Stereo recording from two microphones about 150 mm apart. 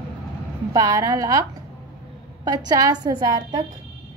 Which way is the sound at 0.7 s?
25° right (ahead or behind).